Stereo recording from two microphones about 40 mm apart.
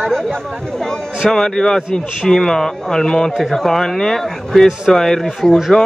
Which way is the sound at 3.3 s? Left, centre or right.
Centre.